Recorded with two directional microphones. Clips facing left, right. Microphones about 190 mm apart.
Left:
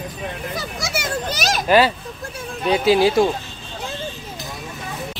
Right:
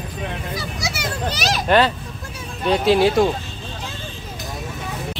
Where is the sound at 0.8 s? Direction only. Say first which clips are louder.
Left 1 dB; 50° left (ahead or behind).